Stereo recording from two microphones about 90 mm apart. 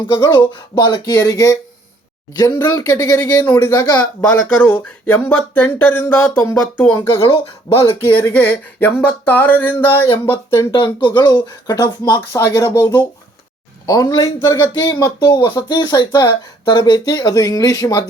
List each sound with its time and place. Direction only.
0.3 s speech: 55° left (ahead or behind)
2.3 s speech: 50° left (ahead or behind)
2.6 s speech: 40° left (ahead or behind)
4.0 s speech: 20° left (ahead or behind)
7.1 s speech: 90° left
8.2 s speech: 15° left (ahead or behind)
10.7 s speech: 60° left (ahead or behind)
12.4 s speech: 35° left (ahead or behind)
12.8 s speech: 20° left (ahead or behind)
13.8 s speech: 45° left (ahead or behind)
14.3 s speech: 30° left (ahead or behind)
14.7 s speech: 50° left (ahead or behind)